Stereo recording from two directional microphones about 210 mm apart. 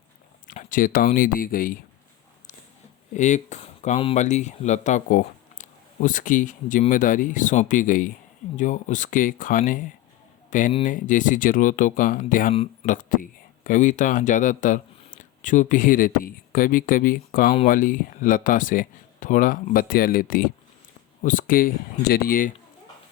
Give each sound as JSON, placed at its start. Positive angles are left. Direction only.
{"t": 0.4, "sound": "speech", "side_deg": 40}
{"t": 3.1, "sound": "speech", "side_deg": 35}